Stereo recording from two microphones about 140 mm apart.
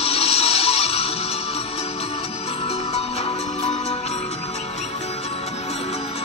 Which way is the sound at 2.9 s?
45° left (ahead or behind).